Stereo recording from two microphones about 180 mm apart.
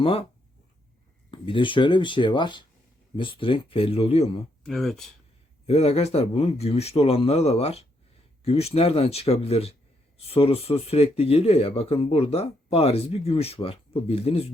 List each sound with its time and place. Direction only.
0.0 s speech: 30° left (ahead or behind)
1.3 s speech: 30° left (ahead or behind)
4.6 s speech: 5° left (ahead or behind)
5.6 s speech: 35° left (ahead or behind)